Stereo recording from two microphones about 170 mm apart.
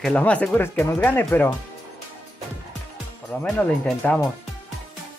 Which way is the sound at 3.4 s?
5° left (ahead or behind).